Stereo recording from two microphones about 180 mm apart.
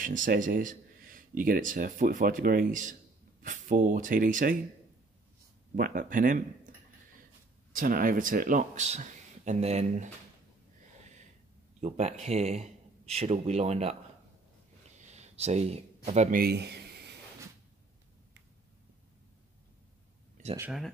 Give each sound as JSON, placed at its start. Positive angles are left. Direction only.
{"t": 0.0, "sound": "speech", "side_deg": -50}
{"t": 5.8, "sound": "speech", "side_deg": -50}
{"t": 7.7, "sound": "speech", "side_deg": -50}
{"t": 11.8, "sound": "speech", "side_deg": -40}
{"t": 15.0, "sound": "a sound", "side_deg": -40}
{"t": 16.3, "sound": "a man's voice", "side_deg": -55}